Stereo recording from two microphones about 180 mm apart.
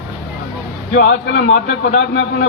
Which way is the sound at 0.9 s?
75° left (ahead or behind).